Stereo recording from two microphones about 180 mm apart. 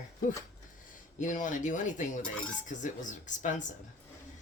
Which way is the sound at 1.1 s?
45° left (ahead or behind).